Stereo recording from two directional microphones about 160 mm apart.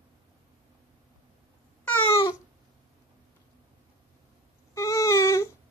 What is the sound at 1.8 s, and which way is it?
Babbling, 10° left (ahead or behind).